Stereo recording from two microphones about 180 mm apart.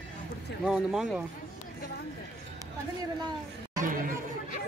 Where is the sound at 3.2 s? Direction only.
25° right (ahead or behind).